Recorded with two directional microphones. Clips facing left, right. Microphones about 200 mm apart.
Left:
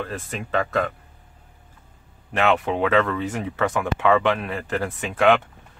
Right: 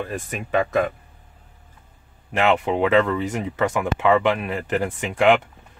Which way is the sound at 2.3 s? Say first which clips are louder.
Right 1 dB; 10° right (ahead or behind).